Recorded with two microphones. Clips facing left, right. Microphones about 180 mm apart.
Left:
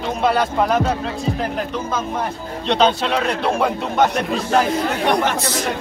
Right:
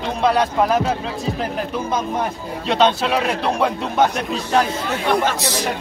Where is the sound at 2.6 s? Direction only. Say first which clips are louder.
Even; centre (ahead or behind).